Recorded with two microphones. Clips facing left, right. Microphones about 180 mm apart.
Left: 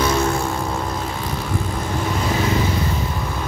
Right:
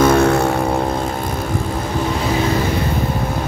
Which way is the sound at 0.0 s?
60° right (ahead or behind).